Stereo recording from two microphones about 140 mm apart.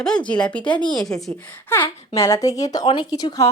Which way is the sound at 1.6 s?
15° left (ahead or behind).